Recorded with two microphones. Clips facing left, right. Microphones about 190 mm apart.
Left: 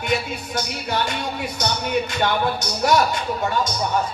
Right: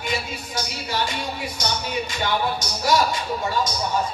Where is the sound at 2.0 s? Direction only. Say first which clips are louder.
Left 3 dB; 60° left (ahead or behind).